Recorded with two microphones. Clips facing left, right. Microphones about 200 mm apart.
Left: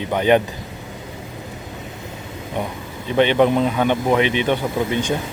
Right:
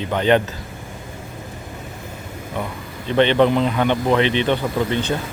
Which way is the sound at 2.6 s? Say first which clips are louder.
Left 2 dB; 20° left (ahead or behind).